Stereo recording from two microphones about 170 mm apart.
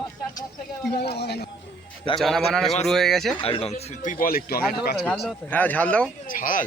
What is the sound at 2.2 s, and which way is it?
A man's voice, centre (ahead or behind).